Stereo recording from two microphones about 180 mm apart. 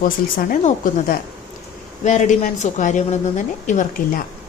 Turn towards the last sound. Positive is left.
turn(degrees=45)  # may be behind; listen again after turning